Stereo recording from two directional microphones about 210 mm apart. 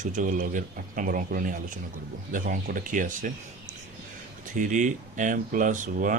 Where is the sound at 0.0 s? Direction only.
35° right (ahead or behind).